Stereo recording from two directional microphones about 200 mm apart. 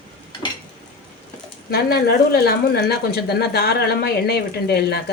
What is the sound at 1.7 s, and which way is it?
Speech, 50° left (ahead or behind).